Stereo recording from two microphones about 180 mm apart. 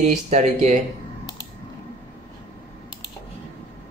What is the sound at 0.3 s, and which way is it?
Speech, 40° right (ahead or behind).